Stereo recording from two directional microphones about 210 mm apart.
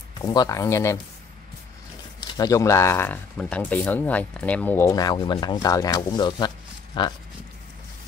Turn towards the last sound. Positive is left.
turn(degrees=20)  # may be behind; listen again after turning